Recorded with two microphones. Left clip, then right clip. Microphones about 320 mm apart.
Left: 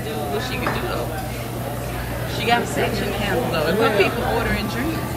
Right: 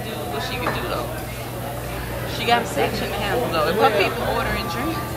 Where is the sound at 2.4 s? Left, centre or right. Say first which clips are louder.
Even; centre.